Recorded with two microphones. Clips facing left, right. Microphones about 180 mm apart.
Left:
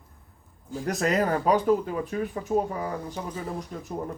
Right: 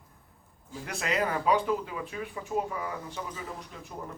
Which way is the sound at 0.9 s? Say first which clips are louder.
Left 6 dB; 40° left (ahead or behind).